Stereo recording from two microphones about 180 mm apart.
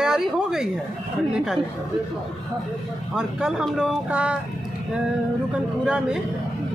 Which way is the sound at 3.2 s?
5° right (ahead or behind).